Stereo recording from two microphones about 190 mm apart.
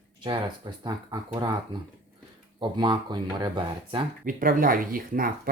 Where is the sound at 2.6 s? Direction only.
25° right (ahead or behind).